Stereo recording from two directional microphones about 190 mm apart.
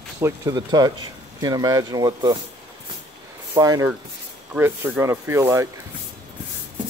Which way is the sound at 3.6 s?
20° right (ahead or behind).